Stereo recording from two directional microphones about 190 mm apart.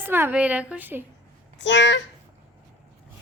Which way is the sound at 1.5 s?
70° left (ahead or behind).